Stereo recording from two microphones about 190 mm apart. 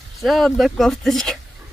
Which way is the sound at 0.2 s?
Centre (ahead or behind).